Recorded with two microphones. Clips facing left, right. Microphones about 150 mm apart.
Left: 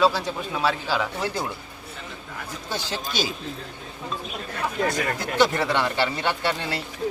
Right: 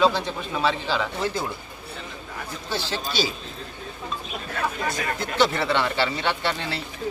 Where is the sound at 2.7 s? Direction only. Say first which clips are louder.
Right 1 dB; 15° left (ahead or behind).